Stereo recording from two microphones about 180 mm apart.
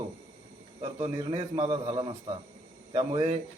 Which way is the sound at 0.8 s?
35° right (ahead or behind).